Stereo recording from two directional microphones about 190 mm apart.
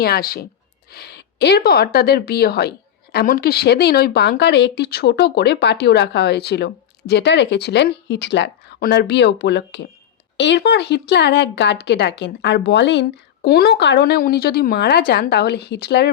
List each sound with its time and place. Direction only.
0.0 s speech: 55° left (ahead or behind)